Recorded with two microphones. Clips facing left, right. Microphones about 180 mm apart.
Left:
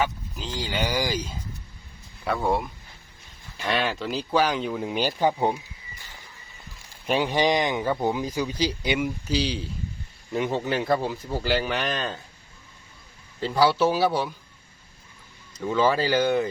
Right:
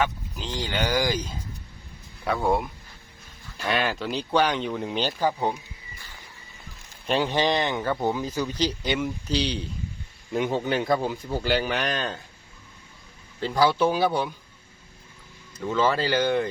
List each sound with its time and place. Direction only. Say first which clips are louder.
0.0 s speech: even; 5° left (ahead or behind)
7.1 s speech: left 1 dB; 15° left (ahead or behind)
13.4 s speech: left 1 dB; 5° left (ahead or behind)
15.6 s speech: left 1 dB; 10° left (ahead or behind)